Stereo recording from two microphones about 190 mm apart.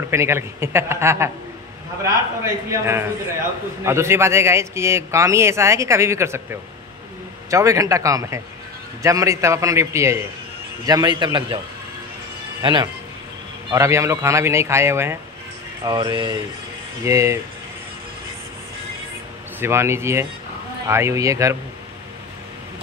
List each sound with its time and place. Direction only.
0.1 s a man's voice: 15° right (ahead or behind)
2.7 s a man's voice: 15° right (ahead or behind)
12.6 s a man's voice: 25° right (ahead or behind)
19.6 s a man's voice: 15° right (ahead or behind)